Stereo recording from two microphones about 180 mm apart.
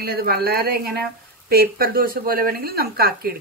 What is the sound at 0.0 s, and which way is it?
Speech, 60° right (ahead or behind).